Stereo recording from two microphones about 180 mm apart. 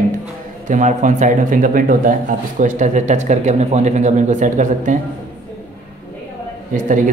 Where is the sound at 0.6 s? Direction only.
45° right (ahead or behind).